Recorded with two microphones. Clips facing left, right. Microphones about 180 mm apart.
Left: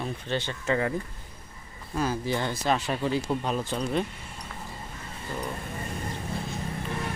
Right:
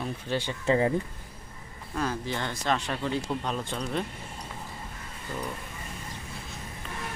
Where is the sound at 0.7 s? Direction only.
25° right (ahead or behind).